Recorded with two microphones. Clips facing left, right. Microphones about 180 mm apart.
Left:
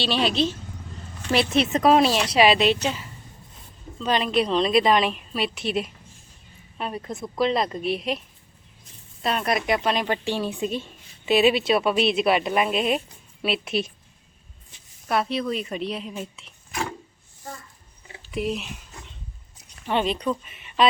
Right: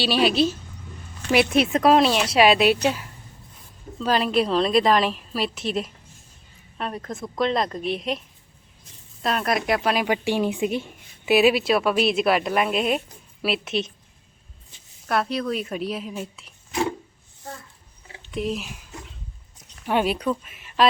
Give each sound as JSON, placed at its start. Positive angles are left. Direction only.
{"t": 0.0, "sound": "a woman's voice", "side_deg": -5}
{"t": 9.2, "sound": "a woman's voice", "side_deg": 0}
{"t": 15.0, "sound": "a woman's voice", "side_deg": 0}
{"t": 18.3, "sound": "a woman's voice", "side_deg": 0}
{"t": 19.8, "sound": "speech", "side_deg": -10}